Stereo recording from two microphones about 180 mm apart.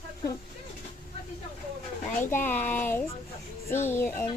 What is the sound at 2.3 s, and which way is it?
A child's voice, 10° left (ahead or behind).